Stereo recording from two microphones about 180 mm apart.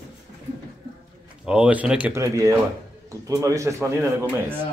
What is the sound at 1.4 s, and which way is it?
Speech, 5° right (ahead or behind).